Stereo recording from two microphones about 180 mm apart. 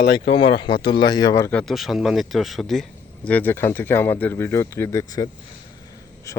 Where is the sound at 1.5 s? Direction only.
Centre (ahead or behind).